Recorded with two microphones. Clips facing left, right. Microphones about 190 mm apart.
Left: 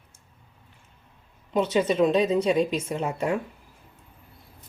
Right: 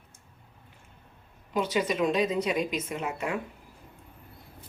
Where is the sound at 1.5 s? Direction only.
25° left (ahead or behind).